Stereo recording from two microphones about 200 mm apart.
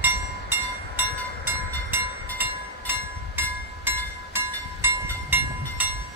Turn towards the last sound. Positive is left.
turn(degrees=-10)  # may be behind; listen again after turning